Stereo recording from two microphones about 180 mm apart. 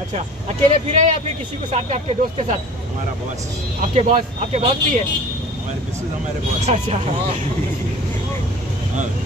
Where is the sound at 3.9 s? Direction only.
40° right (ahead or behind).